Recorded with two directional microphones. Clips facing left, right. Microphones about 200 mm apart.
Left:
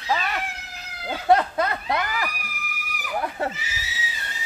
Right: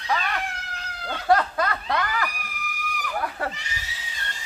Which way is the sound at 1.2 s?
25° left (ahead or behind).